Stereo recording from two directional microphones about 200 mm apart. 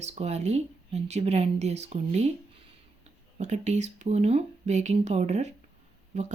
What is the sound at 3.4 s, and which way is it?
Speech, 35° right (ahead or behind).